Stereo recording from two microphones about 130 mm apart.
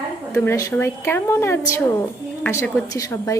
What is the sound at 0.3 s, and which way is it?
A woman's voice, 25° left (ahead or behind).